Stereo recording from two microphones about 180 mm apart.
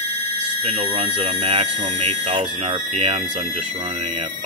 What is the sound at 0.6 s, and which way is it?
Speech, 35° right (ahead or behind).